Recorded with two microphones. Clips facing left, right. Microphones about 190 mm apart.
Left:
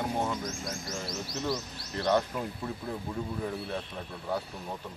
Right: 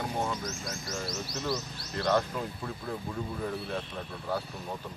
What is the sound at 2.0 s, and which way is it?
Speech, 20° left (ahead or behind).